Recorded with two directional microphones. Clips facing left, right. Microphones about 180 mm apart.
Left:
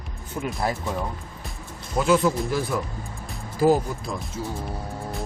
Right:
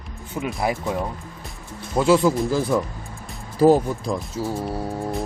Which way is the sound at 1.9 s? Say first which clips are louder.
Right 3 dB; 30° right (ahead or behind).